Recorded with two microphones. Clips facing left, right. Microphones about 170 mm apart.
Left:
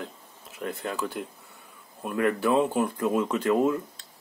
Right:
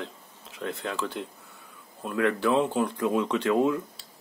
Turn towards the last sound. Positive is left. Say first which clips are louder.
# even
turn(degrees=5)  # may be behind; listen again after turning